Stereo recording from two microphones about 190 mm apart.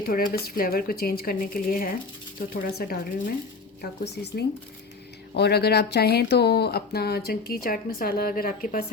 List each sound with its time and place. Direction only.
0.0 s speech: 50° left (ahead or behind)